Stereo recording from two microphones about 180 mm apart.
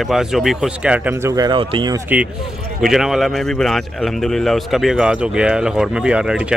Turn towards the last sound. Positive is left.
turn(degrees=-5)  # may be behind; listen again after turning